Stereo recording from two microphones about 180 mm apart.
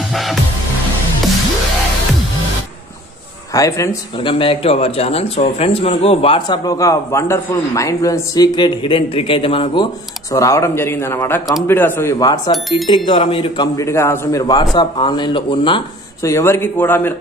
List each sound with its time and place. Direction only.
0.1 s music: centre (ahead or behind)
3.5 s a man's voice: 20° left (ahead or behind)
4.3 s a man's voice: 30° left (ahead or behind)
10.3 s speech: 15° left (ahead or behind)
12.6 s speech: centre (ahead or behind)
13.2 s a man's voice: 30° left (ahead or behind)
13.7 s a man's voice: 15° left (ahead or behind)
16.2 s speech: 15° left (ahead or behind)